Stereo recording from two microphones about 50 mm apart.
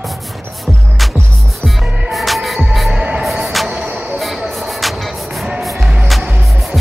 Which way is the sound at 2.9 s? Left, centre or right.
Right.